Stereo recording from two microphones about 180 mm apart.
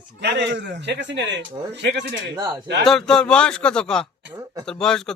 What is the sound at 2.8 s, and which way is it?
Speech, centre (ahead or behind).